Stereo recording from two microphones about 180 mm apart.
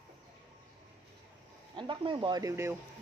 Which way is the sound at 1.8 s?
25° right (ahead or behind).